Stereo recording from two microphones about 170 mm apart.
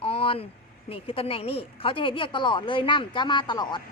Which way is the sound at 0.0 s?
35° left (ahead or behind).